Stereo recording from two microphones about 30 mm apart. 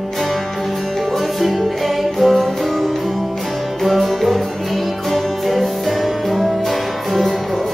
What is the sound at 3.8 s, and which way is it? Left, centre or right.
Music, centre.